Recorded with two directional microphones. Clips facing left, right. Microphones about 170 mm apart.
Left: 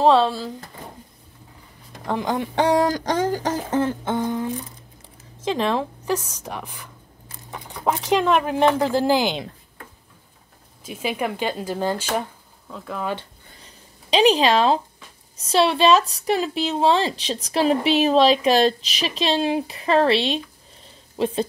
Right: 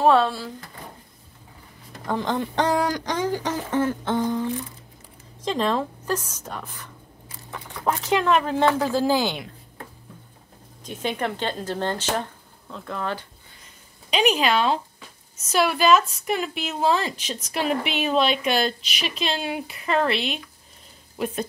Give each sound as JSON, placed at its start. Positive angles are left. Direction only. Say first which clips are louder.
{"t": 0.0, "sound": "speech", "louder": "left 2 dB", "side_deg": 15}
{"t": 2.0, "sound": "speech", "louder": "left 1 dB", "side_deg": 15}
{"t": 3.0, "sound": "a sound", "louder": "left 3 dB", "side_deg": 45}
{"t": 4.3, "sound": "speech", "louder": "even", "side_deg": 10}
{"t": 10.8, "sound": "speech", "louder": "left 1 dB", "side_deg": 5}
{"t": 14.1, "sound": "a woman's voice", "louder": "left 4 dB", "side_deg": 30}